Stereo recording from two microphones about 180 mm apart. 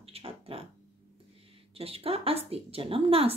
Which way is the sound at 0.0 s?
30° right (ahead or behind).